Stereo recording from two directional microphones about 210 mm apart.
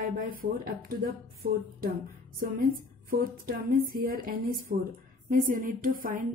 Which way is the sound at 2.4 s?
45° right (ahead or behind).